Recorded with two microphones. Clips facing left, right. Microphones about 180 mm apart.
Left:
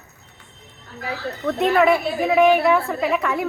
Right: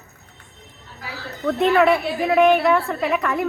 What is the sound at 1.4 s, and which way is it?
A woman's voice, centre (ahead or behind).